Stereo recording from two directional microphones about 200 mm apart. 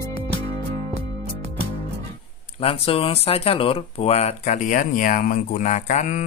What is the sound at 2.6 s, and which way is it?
Speech, 30° left (ahead or behind).